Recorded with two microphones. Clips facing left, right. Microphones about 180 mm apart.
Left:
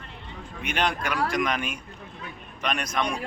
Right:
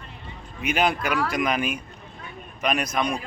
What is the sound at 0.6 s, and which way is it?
Speech, 5° right (ahead or behind).